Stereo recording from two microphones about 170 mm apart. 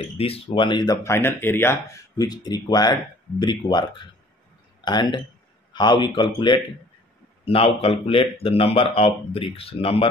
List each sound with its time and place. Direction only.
0.2 s speech: 35° left (ahead or behind)
4.8 s speech: 25° left (ahead or behind)